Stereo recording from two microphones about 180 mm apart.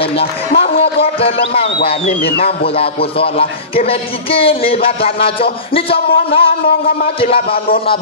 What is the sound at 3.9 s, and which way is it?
Speech, 30° left (ahead or behind).